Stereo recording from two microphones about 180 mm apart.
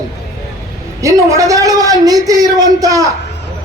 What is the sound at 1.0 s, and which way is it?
Speech, 15° right (ahead or behind).